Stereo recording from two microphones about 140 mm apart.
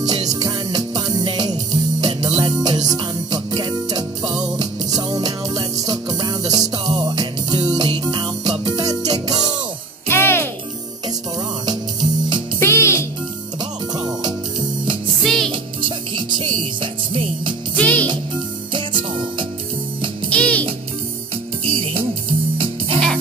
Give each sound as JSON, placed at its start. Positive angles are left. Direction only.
{"t": 0.0, "sound": "music", "side_deg": -25}
{"t": 10.0, "sound": "music", "side_deg": 15}
{"t": 11.6, "sound": "music", "side_deg": -30}
{"t": 12.5, "sound": "music", "side_deg": 20}
{"t": 13.6, "sound": "music", "side_deg": -30}
{"t": 15.2, "sound": "music", "side_deg": 0}
{"t": 15.5, "sound": "music", "side_deg": -35}
{"t": 17.7, "sound": "music", "side_deg": 10}
{"t": 18.7, "sound": "music", "side_deg": -35}
{"t": 20.2, "sound": "music", "side_deg": 10}